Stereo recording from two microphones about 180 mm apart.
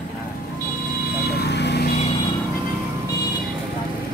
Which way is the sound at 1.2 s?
65° left (ahead or behind).